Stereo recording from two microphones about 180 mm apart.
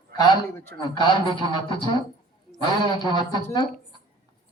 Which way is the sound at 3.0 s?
25° left (ahead or behind).